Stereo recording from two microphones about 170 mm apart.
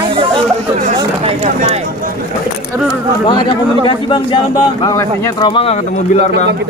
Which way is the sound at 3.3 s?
25° left (ahead or behind).